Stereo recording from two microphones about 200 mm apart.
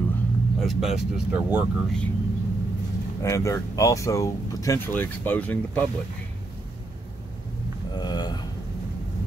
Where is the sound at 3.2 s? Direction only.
15° left (ahead or behind).